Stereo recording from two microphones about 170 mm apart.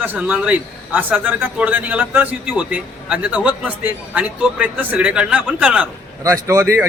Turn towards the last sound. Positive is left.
turn(degrees=-15)  # may be behind; listen again after turning